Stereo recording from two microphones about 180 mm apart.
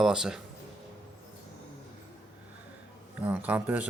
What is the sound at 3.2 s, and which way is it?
Speech, 10° right (ahead or behind).